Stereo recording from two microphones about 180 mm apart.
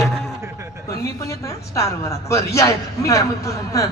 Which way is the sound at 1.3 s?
15° left (ahead or behind).